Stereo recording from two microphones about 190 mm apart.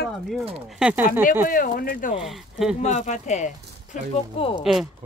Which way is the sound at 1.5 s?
50° left (ahead or behind).